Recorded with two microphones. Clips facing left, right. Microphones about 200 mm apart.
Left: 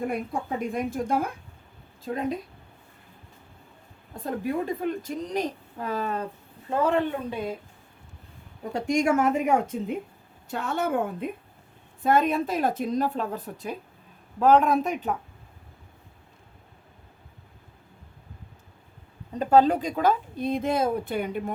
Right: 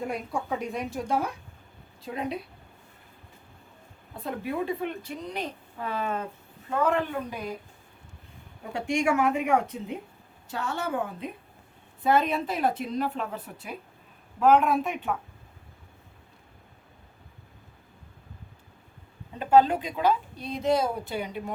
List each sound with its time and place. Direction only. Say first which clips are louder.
0.7 s a woman's voice: left 4 dB; 50° left (ahead or behind)
4.1 s a woman's voice: left 3 dB; 45° left (ahead or behind); by 7.5 s 25° left (ahead or behind)
8.7 s a woman's voice: left 3 dB; 40° left (ahead or behind)
19.3 s a woman's voice: left 1 dB; 40° left (ahead or behind)